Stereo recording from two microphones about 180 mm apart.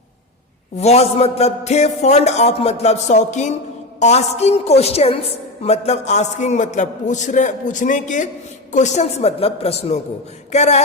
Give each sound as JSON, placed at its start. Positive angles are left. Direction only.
{"t": 0.8, "sound": "a woman's voice", "side_deg": 35}